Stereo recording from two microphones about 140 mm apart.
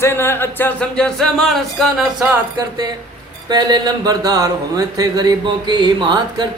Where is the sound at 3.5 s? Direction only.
30° right (ahead or behind).